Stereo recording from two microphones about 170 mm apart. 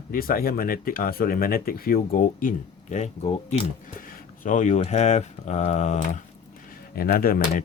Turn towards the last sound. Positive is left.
turn(degrees=60)  # may be behind; listen again after turning